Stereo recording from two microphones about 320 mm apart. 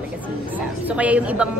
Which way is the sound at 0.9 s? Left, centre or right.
Centre.